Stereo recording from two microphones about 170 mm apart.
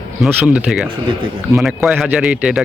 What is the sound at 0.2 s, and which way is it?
A man's voice, 5° right (ahead or behind).